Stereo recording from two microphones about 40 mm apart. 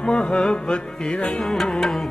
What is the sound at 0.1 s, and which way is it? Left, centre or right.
Music, left.